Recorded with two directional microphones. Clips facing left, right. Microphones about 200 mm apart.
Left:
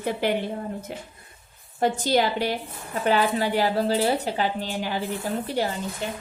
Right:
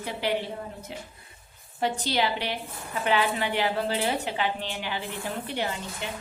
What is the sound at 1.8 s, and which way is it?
A woman's voice, 45° left (ahead or behind).